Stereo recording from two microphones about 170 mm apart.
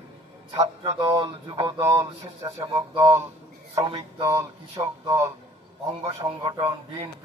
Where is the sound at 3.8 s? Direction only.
35° right (ahead or behind).